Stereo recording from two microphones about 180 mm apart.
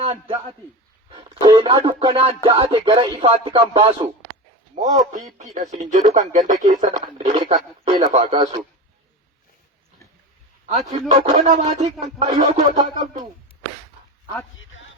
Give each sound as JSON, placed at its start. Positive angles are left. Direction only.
{"t": 0.0, "sound": "a man's voice", "side_deg": -35}
{"t": 1.1, "sound": "music", "side_deg": -25}
{"t": 2.5, "sound": "speech", "side_deg": -30}
{"t": 4.7, "sound": "a man's voice", "side_deg": -45}
{"t": 11.1, "sound": "speech", "side_deg": -40}